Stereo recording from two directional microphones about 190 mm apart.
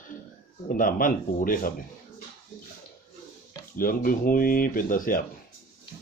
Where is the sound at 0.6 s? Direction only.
45° left (ahead or behind).